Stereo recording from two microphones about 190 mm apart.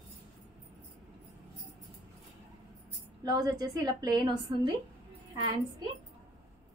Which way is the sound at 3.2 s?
20° right (ahead or behind).